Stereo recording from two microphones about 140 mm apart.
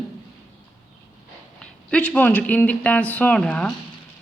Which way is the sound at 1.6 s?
10° left (ahead or behind).